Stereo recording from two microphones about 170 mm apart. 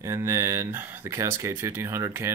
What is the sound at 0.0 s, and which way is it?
Speech, 15° right (ahead or behind).